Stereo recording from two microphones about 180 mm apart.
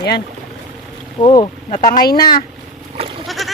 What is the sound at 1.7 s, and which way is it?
Speech, 50° left (ahead or behind).